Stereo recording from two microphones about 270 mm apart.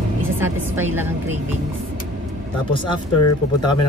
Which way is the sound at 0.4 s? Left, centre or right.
Centre.